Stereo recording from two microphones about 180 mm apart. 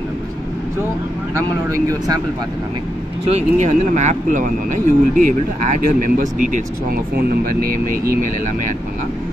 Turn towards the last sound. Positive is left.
turn(degrees=-55)  # may be behind; listen again after turning